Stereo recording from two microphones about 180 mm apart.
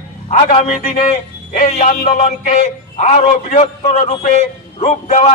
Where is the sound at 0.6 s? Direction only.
45° left (ahead or behind).